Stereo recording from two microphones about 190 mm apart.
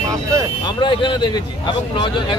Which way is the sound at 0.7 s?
25° left (ahead or behind).